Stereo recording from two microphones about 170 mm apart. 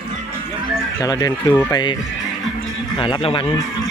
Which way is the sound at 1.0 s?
20° left (ahead or behind).